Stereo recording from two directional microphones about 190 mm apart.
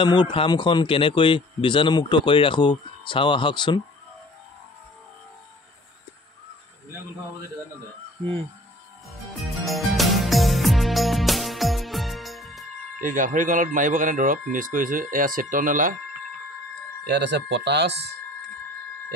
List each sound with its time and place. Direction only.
0.0 s a man's voice: 25° left (ahead or behind)
9.4 s music: centre (ahead or behind)
13.0 s speech: 45° right (ahead or behind)
17.0 s speech: 60° right (ahead or behind)